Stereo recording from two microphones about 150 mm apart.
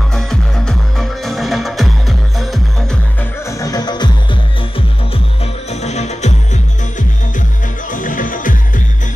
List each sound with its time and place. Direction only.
0.1 s music: 5° left (ahead or behind)
3.4 s music: 20° left (ahead or behind)
5.7 s music: 50° left (ahead or behind); by 8.8 s 65° left (ahead or behind)